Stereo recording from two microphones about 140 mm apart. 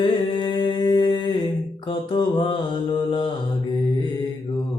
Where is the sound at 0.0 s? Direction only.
35° left (ahead or behind).